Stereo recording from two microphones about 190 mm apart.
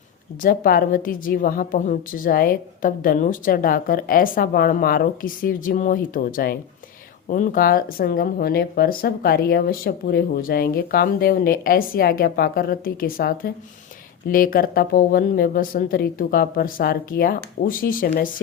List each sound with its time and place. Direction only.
0.4 s speech: 50° left (ahead or behind)